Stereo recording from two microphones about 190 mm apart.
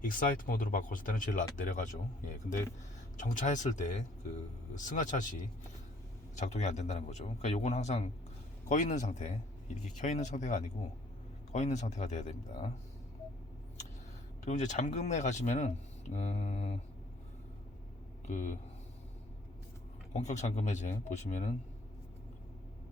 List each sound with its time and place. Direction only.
0.0 s speech: 45° left (ahead or behind)
6.4 s speech: 35° left (ahead or behind)
14.4 s speech: 40° left (ahead or behind)
18.3 s speech: 40° left (ahead or behind)
20.1 s speech: 40° left (ahead or behind)